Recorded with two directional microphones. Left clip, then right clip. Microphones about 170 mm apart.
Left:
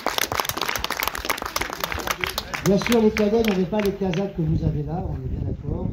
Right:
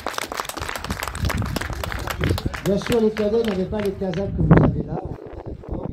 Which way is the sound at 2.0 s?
55° right (ahead or behind).